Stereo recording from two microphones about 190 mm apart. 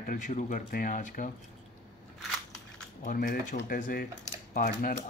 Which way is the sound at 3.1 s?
45° left (ahead or behind).